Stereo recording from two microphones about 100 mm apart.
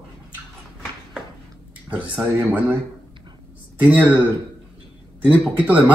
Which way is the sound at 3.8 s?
15° right (ahead or behind).